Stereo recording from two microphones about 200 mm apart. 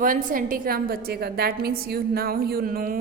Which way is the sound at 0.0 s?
45° right (ahead or behind).